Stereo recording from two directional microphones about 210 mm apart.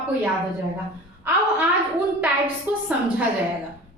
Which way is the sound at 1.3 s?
10° right (ahead or behind).